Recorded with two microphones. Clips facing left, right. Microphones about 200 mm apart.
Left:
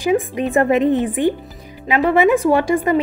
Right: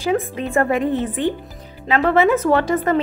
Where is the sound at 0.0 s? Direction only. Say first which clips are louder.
Left 3 dB; 15° left (ahead or behind).